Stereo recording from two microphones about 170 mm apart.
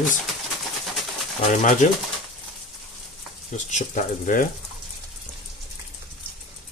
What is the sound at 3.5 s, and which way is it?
Speech, 45° left (ahead or behind).